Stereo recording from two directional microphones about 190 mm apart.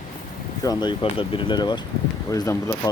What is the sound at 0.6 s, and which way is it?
Speech, 20° left (ahead or behind).